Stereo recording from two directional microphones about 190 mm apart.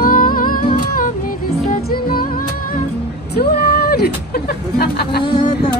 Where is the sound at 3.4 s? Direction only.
55° left (ahead or behind).